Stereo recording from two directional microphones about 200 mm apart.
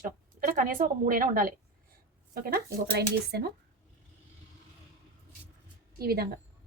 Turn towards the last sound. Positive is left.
turn(degrees=-50)  # may be behind; listen again after turning